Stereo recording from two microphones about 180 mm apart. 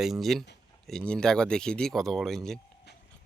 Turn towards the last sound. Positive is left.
turn(degrees=70)  # may be behind; listen again after turning